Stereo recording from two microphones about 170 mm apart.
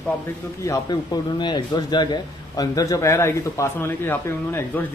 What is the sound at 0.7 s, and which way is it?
A man's voice, 25° left (ahead or behind).